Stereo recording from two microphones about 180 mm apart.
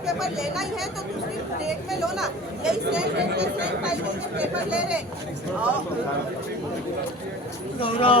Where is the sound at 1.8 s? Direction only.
5° right (ahead or behind).